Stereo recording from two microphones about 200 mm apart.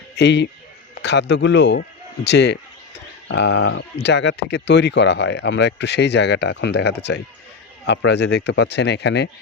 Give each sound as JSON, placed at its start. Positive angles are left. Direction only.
{"t": 0.2, "sound": "a man's voice", "side_deg": 60}